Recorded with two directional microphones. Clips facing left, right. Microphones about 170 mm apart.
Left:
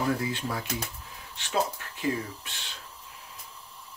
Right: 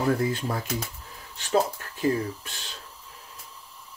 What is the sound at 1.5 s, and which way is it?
Speech, 40° right (ahead or behind).